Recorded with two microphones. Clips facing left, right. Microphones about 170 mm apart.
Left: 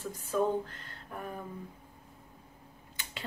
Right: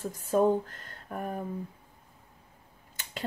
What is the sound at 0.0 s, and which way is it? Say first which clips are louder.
Speech: right 5 dB; 50° right (ahead or behind).